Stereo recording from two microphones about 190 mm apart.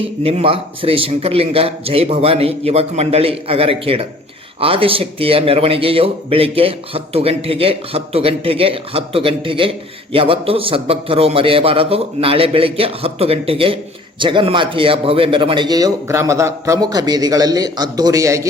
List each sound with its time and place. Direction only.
0.2 s a man's voice: 30° right (ahead or behind)